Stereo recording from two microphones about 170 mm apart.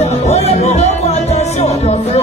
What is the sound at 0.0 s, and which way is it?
Music, 40° left (ahead or behind).